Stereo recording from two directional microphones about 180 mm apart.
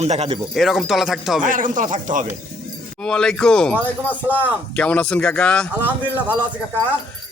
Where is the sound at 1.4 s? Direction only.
45° right (ahead or behind).